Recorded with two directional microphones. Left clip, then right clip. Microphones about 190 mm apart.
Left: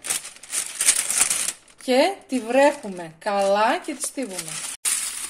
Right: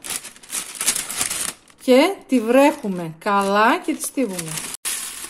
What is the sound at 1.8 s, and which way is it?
Speech, 35° right (ahead or behind).